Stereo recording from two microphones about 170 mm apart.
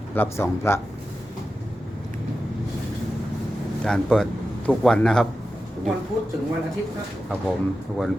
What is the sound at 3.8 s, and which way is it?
A man's voice, 5° left (ahead or behind).